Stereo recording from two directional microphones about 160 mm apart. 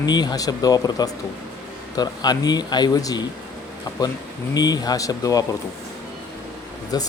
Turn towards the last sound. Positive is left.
turn(degrees=25)  # may be behind; listen again after turning